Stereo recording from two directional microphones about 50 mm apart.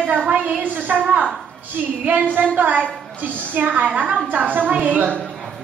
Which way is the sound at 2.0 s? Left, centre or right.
Right.